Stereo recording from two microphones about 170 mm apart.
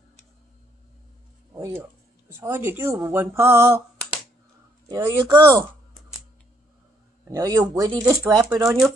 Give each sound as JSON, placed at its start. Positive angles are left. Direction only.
{"t": 1.5, "sound": "music", "side_deg": -15}
{"t": 2.2, "sound": "speech", "side_deg": -15}
{"t": 4.8, "sound": "speech", "side_deg": -20}
{"t": 7.2, "sound": "speech", "side_deg": -20}
{"t": 8.0, "sound": "speech", "side_deg": -10}